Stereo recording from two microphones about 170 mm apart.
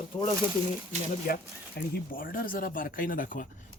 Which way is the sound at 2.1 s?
55° left (ahead or behind).